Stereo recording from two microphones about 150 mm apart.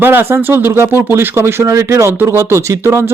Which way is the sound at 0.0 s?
15° right (ahead or behind).